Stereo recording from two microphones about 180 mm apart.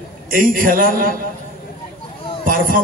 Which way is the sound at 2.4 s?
50° right (ahead or behind).